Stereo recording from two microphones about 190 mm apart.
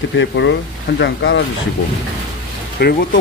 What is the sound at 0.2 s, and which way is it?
Speech, 70° left (ahead or behind).